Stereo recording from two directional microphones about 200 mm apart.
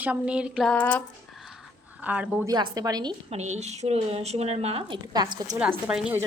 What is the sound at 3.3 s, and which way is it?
A woman's voice, 35° right (ahead or behind).